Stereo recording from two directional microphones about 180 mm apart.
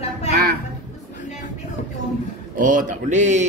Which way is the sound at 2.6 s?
45° right (ahead or behind).